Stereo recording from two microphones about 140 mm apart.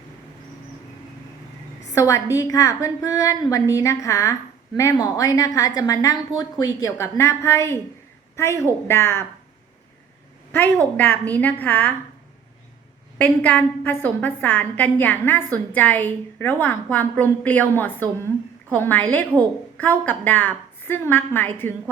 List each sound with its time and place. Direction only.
2.0 s a woman's voice: 25° left (ahead or behind)
10.9 s a woman's voice: 10° left (ahead or behind)
13.1 s a woman's voice: 10° left (ahead or behind)